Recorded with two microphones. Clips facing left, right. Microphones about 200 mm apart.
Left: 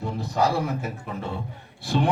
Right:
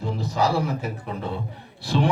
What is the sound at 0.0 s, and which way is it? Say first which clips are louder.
A man's voice: even; 55° left (ahead or behind).